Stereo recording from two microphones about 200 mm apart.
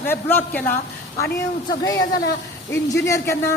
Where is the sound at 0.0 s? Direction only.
10° left (ahead or behind).